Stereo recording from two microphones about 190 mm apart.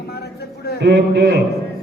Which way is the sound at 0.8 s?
65° right (ahead or behind).